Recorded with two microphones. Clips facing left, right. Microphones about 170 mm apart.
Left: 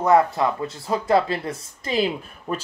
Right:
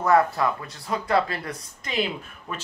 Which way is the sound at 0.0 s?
20° left (ahead or behind).